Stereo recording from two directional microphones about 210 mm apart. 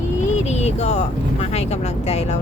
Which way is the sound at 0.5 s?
30° left (ahead or behind).